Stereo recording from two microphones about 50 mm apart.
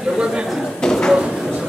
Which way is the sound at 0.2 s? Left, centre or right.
Centre.